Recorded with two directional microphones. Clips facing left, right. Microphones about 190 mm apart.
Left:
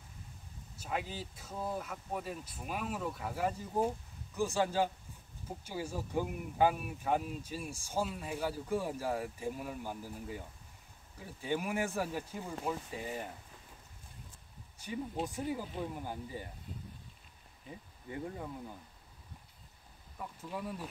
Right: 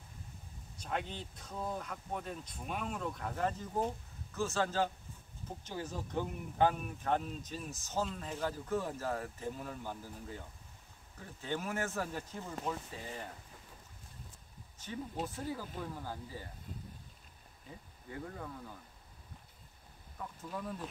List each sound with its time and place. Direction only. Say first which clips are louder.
0.7 s speech: left 1 dB; 5° left (ahead or behind)
15.2 s speech: left 3 dB; 15° left (ahead or behind)
18.1 s speech: left 3 dB; 20° left (ahead or behind)
20.2 s speech: left 1 dB; 10° left (ahead or behind)